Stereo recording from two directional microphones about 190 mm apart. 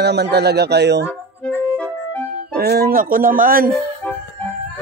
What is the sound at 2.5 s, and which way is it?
Speech, 55° right (ahead or behind).